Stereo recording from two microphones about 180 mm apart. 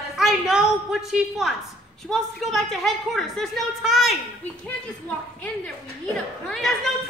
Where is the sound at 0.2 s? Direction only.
Centre (ahead or behind).